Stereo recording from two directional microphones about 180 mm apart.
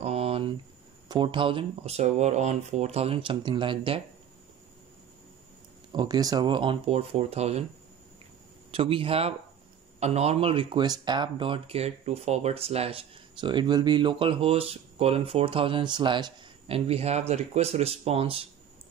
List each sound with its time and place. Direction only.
0.0 s a sound: 35° right (ahead or behind)
1.0 s speech: 25° right (ahead or behind)
5.9 s speech: 20° right (ahead or behind)
8.7 s speech: 30° right (ahead or behind)